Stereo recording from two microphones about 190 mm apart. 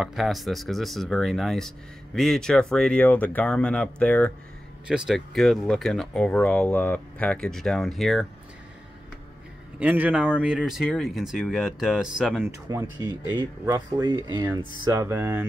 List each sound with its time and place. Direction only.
0.0 s speech: centre (ahead or behind)
9.8 s speech: 10° right (ahead or behind)
12.4 s speech: 15° right (ahead or behind)